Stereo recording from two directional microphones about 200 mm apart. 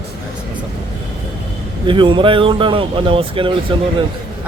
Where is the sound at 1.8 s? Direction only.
25° right (ahead or behind).